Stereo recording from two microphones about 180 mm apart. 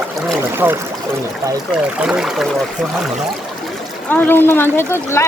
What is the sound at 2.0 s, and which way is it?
Speech, 5° right (ahead or behind).